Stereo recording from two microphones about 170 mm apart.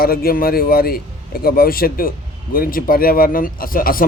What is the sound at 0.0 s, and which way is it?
A man's voice, 60° left (ahead or behind).